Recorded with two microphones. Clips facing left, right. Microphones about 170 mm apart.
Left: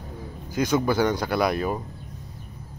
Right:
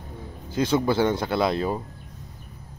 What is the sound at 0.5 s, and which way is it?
Speech, 25° right (ahead or behind).